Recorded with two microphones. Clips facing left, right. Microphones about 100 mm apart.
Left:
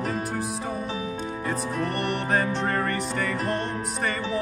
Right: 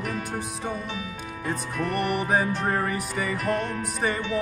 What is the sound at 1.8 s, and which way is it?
Music, centre (ahead or behind).